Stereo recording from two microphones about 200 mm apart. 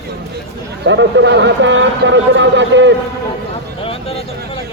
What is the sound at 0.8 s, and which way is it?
A man's voice, 65° right (ahead or behind).